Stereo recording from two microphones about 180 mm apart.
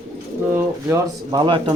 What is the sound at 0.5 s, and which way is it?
Speech, 15° right (ahead or behind).